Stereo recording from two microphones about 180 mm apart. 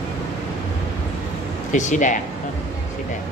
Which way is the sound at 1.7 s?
45° left (ahead or behind).